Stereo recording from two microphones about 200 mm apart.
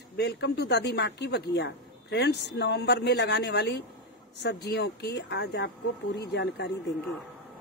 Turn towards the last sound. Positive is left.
turn(degrees=55)  # may be behind; listen again after turning